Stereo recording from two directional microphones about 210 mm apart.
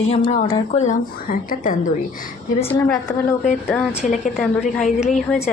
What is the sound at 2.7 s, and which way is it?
Speech, 15° left (ahead or behind).